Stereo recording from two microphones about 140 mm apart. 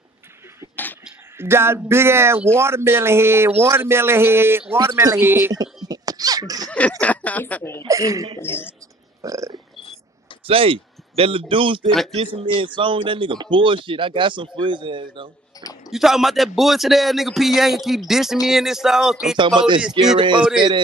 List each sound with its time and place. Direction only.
1.4 s a man's voice: 15° right (ahead or behind)
5.9 s a sound: 25° right (ahead or behind)
6.7 s speech: 10° left (ahead or behind)
7.8 s a man's voice: 25° right (ahead or behind)
8.4 s speech: 15° left (ahead or behind)
9.2 s a man's voice: 25° right (ahead or behind)
10.4 s speech: 40° right (ahead or behind)
15.5 s a sound: 25° left (ahead or behind)
15.9 s a man's voice: centre (ahead or behind)
19.3 s speech: 35° right (ahead or behind)